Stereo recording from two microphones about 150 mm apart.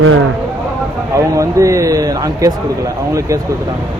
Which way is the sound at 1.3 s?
20° right (ahead or behind).